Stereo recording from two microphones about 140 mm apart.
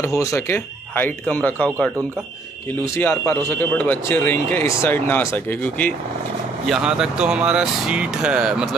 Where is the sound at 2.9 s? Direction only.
15° left (ahead or behind).